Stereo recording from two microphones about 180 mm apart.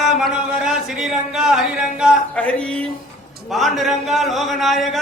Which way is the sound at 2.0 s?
5° right (ahead or behind).